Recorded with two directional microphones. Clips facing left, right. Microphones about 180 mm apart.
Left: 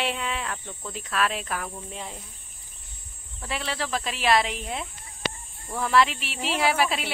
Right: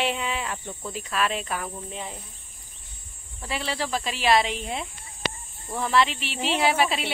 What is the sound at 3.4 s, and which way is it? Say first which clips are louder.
Speech: right 1 dB; centre (ahead or behind).